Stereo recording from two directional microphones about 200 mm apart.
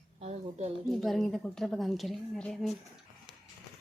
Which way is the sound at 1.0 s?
Centre (ahead or behind).